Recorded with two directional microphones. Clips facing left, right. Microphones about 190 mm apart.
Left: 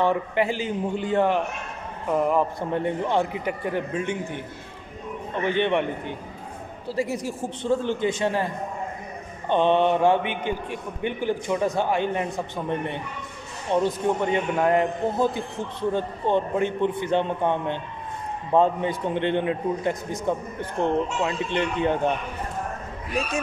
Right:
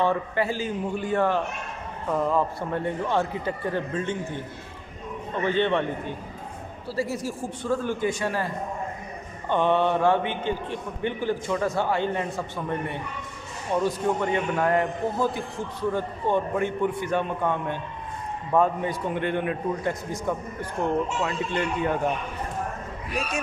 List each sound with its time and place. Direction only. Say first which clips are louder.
0.0 s a man's voice: left 2 dB; 15° left (ahead or behind)
5.4 s a man's voice: left 1 dB; 15° left (ahead or behind)
9.5 s a man's voice: left 2 dB; 20° left (ahead or behind)